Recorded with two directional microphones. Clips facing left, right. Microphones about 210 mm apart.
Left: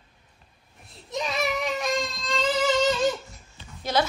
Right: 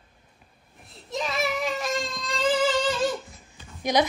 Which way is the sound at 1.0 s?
Centre (ahead or behind).